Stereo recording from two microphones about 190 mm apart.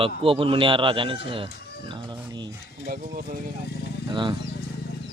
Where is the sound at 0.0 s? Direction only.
30° right (ahead or behind).